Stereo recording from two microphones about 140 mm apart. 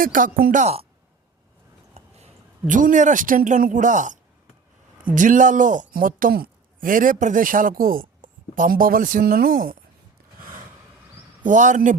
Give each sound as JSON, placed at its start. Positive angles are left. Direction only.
{"t": 0.0, "sound": "speech", "side_deg": -80}
{"t": 1.9, "sound": "speech", "side_deg": -50}
{"t": 11.4, "sound": "speech", "side_deg": -60}